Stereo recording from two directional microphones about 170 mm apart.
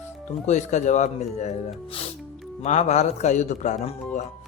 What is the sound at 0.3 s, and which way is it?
A man's voice, 45° left (ahead or behind).